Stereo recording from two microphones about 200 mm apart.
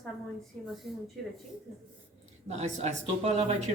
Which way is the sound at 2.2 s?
35° right (ahead or behind).